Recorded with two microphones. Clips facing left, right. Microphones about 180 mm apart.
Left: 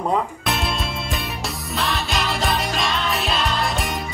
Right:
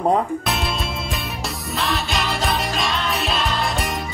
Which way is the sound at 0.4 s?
Centre (ahead or behind).